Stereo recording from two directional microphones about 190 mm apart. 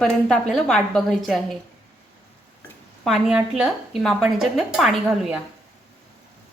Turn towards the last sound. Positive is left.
turn(degrees=0)  # may be behind; listen again after turning